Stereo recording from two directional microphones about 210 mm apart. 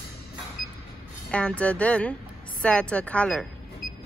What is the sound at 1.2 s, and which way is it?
Speech, 5° left (ahead or behind).